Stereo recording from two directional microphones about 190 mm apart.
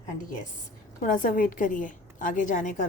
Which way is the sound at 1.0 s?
45° left (ahead or behind).